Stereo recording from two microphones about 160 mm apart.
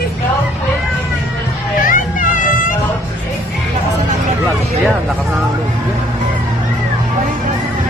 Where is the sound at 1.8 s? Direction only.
60° left (ahead or behind).